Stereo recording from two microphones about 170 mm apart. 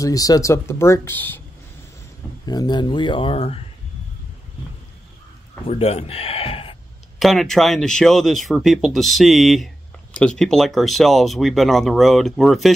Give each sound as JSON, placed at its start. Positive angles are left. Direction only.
{"t": 0.0, "sound": "speech", "side_deg": 20}
{"t": 2.4, "sound": "speech", "side_deg": 25}
{"t": 5.7, "sound": "speech", "side_deg": 35}
{"t": 7.2, "sound": "speech", "side_deg": 0}